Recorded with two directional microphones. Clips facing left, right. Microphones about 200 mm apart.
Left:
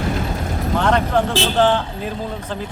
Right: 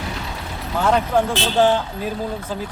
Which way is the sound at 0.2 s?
45° left (ahead or behind).